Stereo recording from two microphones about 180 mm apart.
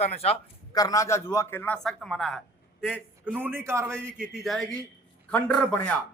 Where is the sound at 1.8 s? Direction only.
Centre (ahead or behind); by 4.0 s 15° right (ahead or behind).